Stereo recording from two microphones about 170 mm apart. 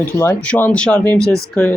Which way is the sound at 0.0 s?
15° left (ahead or behind).